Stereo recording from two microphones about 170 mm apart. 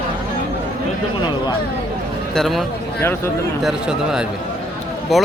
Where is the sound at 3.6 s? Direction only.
5° right (ahead or behind).